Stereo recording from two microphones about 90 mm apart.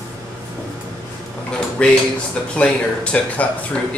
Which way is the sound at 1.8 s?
10° left (ahead or behind).